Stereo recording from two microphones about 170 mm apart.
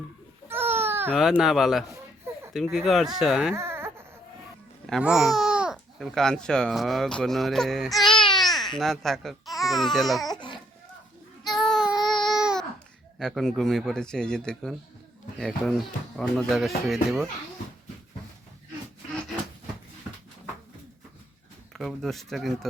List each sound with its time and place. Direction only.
0.4 s babbling: 15° right (ahead or behind)
1.1 s speech: 5° right (ahead or behind)
3.5 s baby cry: 15° right (ahead or behind)
4.9 s speech: 5° right (ahead or behind)
10.2 s baby cry: 25° left (ahead or behind)
11.6 s child singing: centre (ahead or behind)
12.2 s babbling: centre (ahead or behind)
13.1 s speech: centre (ahead or behind)
21.7 s speech: centre (ahead or behind)